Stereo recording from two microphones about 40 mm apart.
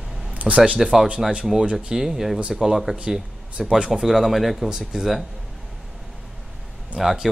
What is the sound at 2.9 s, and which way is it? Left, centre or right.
Speech, right.